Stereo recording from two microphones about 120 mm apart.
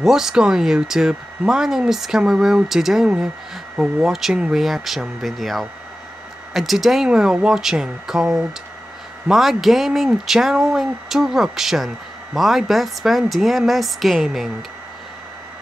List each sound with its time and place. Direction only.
0.0 s speech: 5° right (ahead or behind)